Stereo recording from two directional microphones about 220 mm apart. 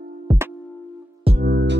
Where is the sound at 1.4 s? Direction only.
50° right (ahead or behind).